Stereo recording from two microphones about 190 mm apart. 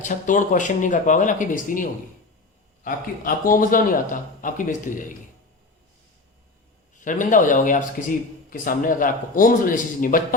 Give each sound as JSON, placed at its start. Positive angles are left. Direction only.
{"t": 0.0, "sound": "a man's voice", "side_deg": 40}
{"t": 7.0, "sound": "a man's voice", "side_deg": 45}